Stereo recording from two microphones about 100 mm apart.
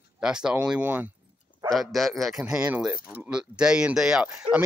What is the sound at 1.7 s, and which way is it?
Speech, centre (ahead or behind).